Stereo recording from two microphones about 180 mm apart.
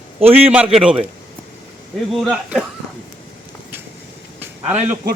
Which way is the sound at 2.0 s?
Centre (ahead or behind).